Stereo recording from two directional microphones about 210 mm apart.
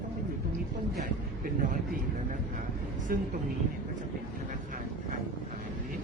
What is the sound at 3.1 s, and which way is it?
Speech, 45° right (ahead or behind).